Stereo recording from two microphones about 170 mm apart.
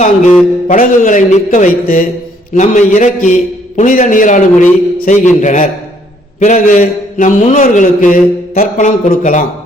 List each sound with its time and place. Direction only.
0.0 s a man's voice: 45° left (ahead or behind)